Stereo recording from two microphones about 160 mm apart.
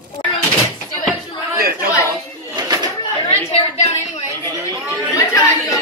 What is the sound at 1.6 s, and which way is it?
Chatter, 70° right (ahead or behind).